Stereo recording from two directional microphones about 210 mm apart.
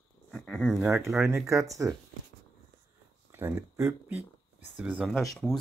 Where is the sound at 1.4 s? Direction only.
15° right (ahead or behind).